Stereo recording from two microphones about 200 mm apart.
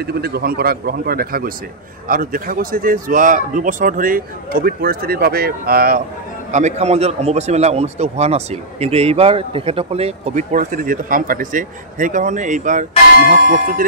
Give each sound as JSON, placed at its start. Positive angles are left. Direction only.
{"t": 0.0, "sound": "a man's voice", "side_deg": -50}
{"t": 6.5, "sound": "a man's voice", "side_deg": -35}